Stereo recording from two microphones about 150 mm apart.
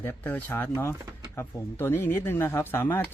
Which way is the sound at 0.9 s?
25° right (ahead or behind).